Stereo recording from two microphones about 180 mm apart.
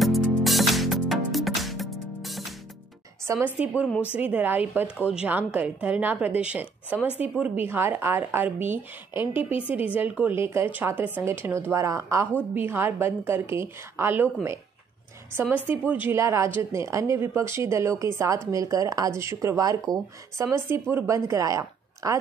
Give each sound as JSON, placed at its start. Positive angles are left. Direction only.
{"t": 0.0, "sound": "music", "side_deg": 0}
{"t": 3.3, "sound": "a woman's voice", "side_deg": -10}